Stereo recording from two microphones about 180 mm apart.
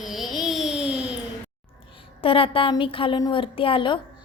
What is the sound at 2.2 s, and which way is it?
A woman's voice, 30° left (ahead or behind).